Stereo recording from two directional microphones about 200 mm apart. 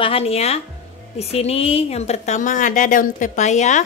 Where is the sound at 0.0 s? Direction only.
30° left (ahead or behind).